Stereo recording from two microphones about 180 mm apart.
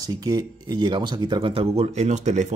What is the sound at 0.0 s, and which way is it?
Speech, 20° right (ahead or behind).